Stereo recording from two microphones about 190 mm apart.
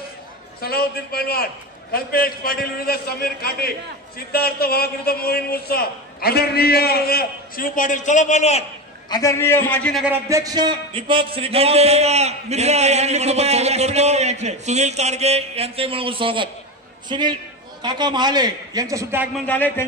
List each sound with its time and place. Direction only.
0.6 s a man's voice: 55° left (ahead or behind); by 8.6 s 35° left (ahead or behind)
9.1 s a man's voice: 15° left (ahead or behind)
9.9 s a man's voice: 10° right (ahead or behind); by 16.4 s 25° right (ahead or behind)
17.8 s a man's voice: 25° right (ahead or behind)
19.4 s a man's voice: 10° left (ahead or behind)